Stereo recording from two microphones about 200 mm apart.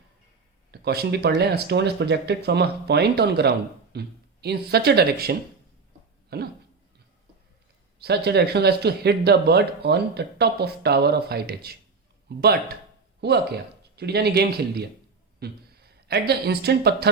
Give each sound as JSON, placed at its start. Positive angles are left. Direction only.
{"t": 0.7, "sound": "speech", "side_deg": -55}
{"t": 7.9, "sound": "a woman's voice", "side_deg": -55}